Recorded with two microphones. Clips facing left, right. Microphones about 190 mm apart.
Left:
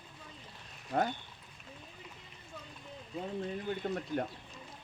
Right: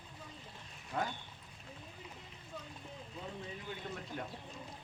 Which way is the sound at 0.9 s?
40° left (ahead or behind).